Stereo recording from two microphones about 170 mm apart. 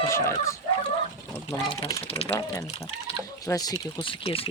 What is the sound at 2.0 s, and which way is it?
Speech, 35° left (ahead or behind).